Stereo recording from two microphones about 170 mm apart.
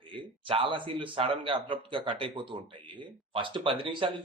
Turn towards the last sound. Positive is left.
turn(degrees=-30)  # may be behind; listen again after turning